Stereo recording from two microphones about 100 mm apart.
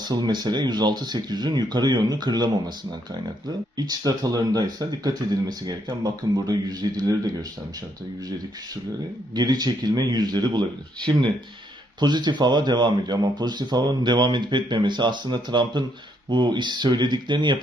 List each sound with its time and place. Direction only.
0.0 s speech: 45° right (ahead or behind)
3.8 s speech: 40° right (ahead or behind)
9.3 s speech: 45° right (ahead or behind)